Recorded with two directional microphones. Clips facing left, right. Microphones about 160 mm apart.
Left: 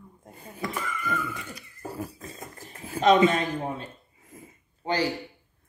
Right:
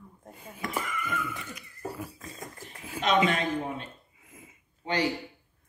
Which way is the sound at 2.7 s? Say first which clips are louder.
Left 7 dB; 40° left (ahead or behind).